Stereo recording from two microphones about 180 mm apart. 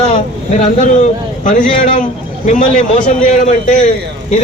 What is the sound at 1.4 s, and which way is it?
Speech, 45° left (ahead or behind).